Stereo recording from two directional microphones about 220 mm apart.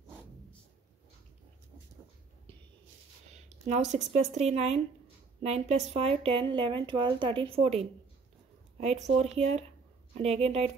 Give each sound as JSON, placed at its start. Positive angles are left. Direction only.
{"t": 3.4, "sound": "speech", "side_deg": -30}